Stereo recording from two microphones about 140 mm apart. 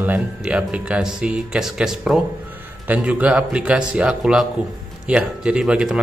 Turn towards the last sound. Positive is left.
turn(degrees=-5)  # may be behind; listen again after turning